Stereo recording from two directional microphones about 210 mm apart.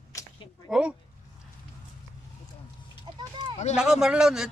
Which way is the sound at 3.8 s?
5° right (ahead or behind).